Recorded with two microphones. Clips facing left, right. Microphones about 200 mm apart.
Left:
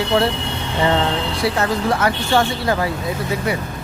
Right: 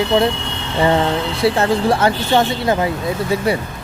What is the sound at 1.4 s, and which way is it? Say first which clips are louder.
Speech: right 5 dB; 30° right (ahead or behind).